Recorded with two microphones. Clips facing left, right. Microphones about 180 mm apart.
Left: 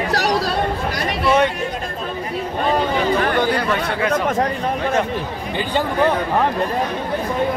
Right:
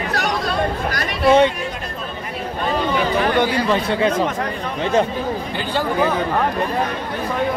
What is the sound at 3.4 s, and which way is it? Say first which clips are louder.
Speech: right 1 dB; 25° right (ahead or behind).